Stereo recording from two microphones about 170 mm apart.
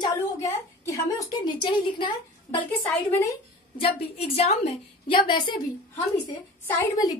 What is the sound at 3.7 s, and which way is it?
A woman's voice, 35° left (ahead or behind).